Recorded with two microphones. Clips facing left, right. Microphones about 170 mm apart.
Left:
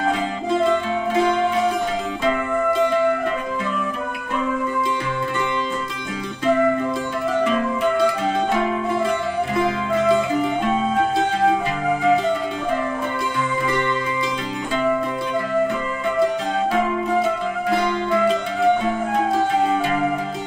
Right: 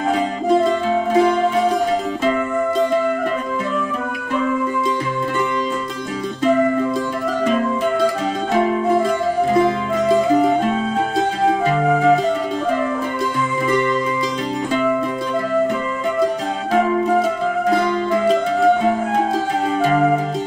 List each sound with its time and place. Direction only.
0.7 s music: 35° right (ahead or behind)
8.5 s music: 40° right (ahead or behind)
17.6 s music: 40° right (ahead or behind)
19.6 s music: 40° right (ahead or behind)